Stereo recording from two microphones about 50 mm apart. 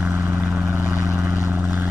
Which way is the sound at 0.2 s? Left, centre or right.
Right.